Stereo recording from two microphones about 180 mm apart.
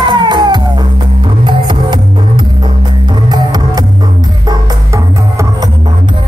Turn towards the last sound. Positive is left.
turn(degrees=-15)  # may be behind; listen again after turning